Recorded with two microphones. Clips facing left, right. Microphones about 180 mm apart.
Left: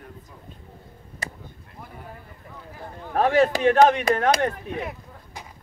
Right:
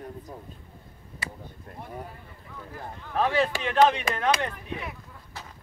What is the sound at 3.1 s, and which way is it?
Speech, 45° left (ahead or behind).